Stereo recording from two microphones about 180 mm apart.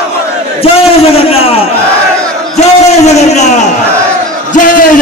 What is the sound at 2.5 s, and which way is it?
A man's voice, 40° left (ahead or behind).